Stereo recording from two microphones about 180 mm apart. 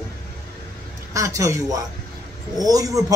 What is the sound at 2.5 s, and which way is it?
Speech, 20° right (ahead or behind).